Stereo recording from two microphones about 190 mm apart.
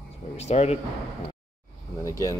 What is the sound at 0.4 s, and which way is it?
Speech, 35° left (ahead or behind).